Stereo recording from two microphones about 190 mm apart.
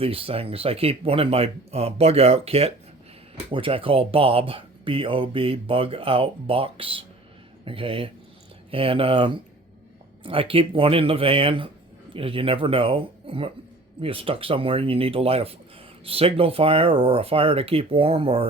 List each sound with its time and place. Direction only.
0.0 s speech: 30° right (ahead or behind)